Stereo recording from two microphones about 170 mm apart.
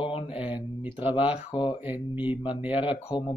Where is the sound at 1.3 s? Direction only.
35° left (ahead or behind).